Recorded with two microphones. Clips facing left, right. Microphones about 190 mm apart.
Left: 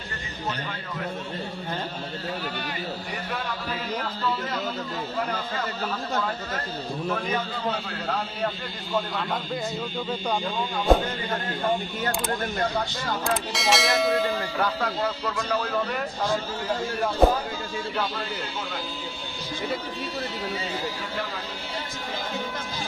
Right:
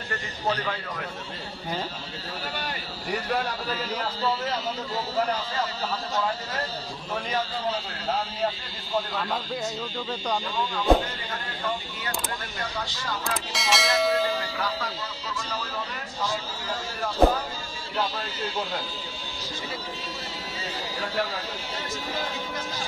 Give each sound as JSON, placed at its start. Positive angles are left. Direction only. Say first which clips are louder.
{"t": 7.2, "sound": "speech", "louder": "left 1 dB", "side_deg": 55}
{"t": 10.9, "sound": "speech", "louder": "left 1 dB", "side_deg": 0}
{"t": 11.6, "sound": "speech", "louder": "left 5 dB", "side_deg": 55}
{"t": 13.5, "sound": "speech", "louder": "even", "side_deg": 0}
{"t": 14.6, "sound": "speech", "louder": "left 5 dB", "side_deg": 55}